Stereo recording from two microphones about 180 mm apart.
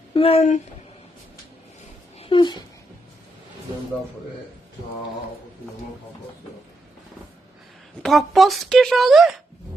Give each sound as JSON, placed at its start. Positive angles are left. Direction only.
{"t": 0.1, "sound": "speech", "side_deg": 30}
{"t": 2.1, "sound": "a sound", "side_deg": 30}
{"t": 8.0, "sound": "speech", "side_deg": 0}